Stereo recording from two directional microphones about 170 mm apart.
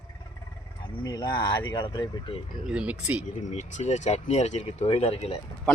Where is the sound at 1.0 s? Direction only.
25° left (ahead or behind).